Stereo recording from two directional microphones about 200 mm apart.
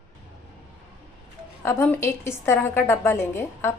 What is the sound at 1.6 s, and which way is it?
A woman's voice, 10° left (ahead or behind).